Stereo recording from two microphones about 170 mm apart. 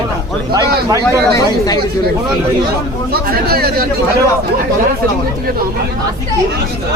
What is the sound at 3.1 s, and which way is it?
Speech, 65° right (ahead or behind).